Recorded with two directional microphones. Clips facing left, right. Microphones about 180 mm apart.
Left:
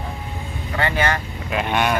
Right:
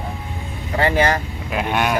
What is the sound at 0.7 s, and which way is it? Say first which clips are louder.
Speech: right 4 dB; 35° right (ahead or behind).